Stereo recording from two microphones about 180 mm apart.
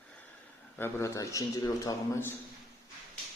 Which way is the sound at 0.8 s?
15° left (ahead or behind).